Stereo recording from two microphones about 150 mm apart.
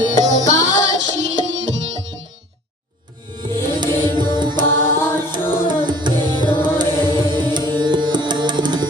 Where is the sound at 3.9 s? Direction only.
15° left (ahead or behind).